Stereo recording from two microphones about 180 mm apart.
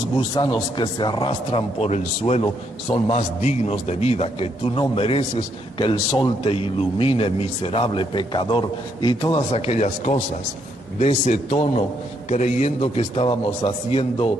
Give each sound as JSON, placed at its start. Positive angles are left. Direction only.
{"t": 0.3, "sound": "a man's voice", "side_deg": 25}
{"t": 9.6, "sound": "a man's voice", "side_deg": 40}